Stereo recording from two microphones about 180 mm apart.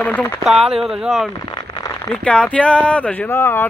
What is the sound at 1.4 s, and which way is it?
Rain on surface, 20° left (ahead or behind).